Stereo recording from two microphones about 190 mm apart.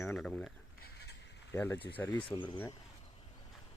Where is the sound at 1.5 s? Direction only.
15° left (ahead or behind).